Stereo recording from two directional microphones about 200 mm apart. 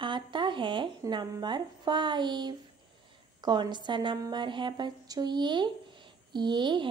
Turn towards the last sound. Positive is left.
turn(degrees=-25)  # may be behind; listen again after turning